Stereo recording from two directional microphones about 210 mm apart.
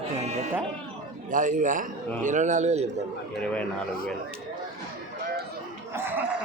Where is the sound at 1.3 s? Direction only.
40° right (ahead or behind).